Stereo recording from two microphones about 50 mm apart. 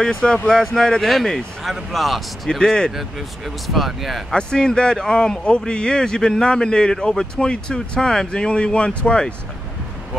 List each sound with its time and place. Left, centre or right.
0.0 s a man's voice: centre
2.6 s a man's voice: centre
2.9 s speech: centre
4.3 s a man's voice: centre